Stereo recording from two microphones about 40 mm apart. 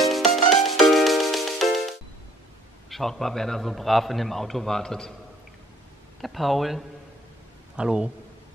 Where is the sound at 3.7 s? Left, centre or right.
Centre.